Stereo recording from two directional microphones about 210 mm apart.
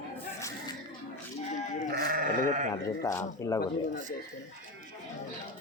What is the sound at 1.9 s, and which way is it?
Sheep, 45° right (ahead or behind).